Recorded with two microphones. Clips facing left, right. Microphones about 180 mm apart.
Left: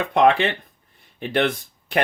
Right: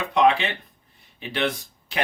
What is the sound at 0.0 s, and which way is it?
Speech, 55° left (ahead or behind).